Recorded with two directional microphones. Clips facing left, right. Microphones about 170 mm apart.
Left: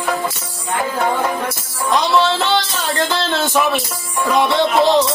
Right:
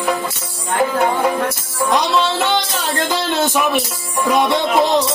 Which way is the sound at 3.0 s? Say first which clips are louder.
Right 1 dB; 15° right (ahead or behind).